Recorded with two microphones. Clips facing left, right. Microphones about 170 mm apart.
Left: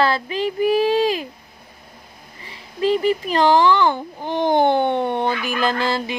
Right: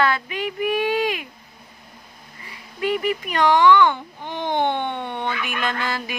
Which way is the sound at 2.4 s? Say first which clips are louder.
Left 5 dB; 30° left (ahead or behind).